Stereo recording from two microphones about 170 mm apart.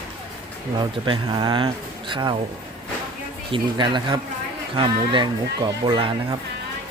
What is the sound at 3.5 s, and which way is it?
Speech, 25° right (ahead or behind).